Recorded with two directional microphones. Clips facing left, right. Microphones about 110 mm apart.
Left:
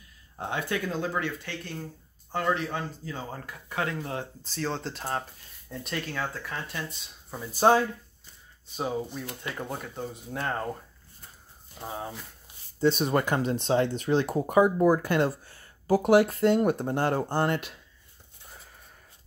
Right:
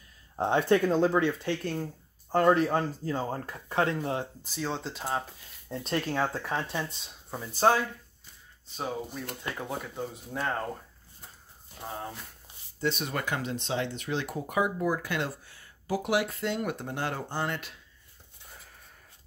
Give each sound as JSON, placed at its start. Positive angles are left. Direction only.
{"t": 0.4, "sound": "speech", "side_deg": -30}
{"t": 1.4, "sound": "speech", "side_deg": -40}
{"t": 4.4, "sound": "speech", "side_deg": -5}
{"t": 5.7, "sound": "speech", "side_deg": -35}
{"t": 7.6, "sound": "speech", "side_deg": 15}
{"t": 11.8, "sound": "speech", "side_deg": 5}
{"t": 12.8, "sound": "speech", "side_deg": 35}